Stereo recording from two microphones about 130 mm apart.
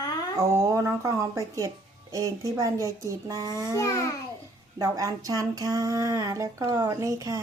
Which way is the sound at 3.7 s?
25° left (ahead or behind).